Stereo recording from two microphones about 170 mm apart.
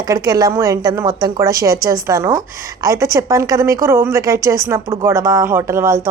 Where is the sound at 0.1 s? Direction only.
20° right (ahead or behind).